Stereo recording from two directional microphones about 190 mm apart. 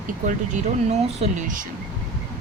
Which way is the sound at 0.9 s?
40° right (ahead or behind).